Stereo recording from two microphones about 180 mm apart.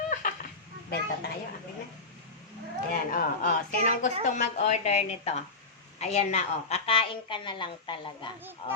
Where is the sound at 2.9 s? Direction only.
50° left (ahead or behind).